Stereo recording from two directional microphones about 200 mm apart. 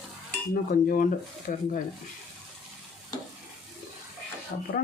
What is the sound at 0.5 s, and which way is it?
Speech, 45° left (ahead or behind).